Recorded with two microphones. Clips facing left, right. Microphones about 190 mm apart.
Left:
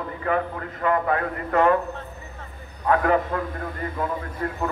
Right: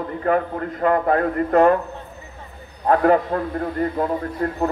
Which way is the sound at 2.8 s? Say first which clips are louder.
Right 4 dB; 40° right (ahead or behind).